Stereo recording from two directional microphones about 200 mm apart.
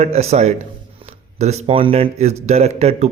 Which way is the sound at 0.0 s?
30° right (ahead or behind).